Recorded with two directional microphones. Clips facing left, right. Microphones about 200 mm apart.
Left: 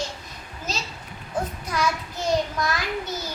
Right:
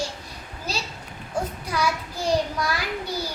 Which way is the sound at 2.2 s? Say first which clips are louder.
Even; 10° right (ahead or behind).